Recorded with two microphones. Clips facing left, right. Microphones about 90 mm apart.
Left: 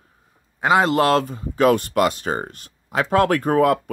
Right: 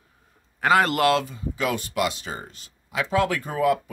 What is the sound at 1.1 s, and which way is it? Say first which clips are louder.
Speech: left 3 dB; 45° left (ahead or behind).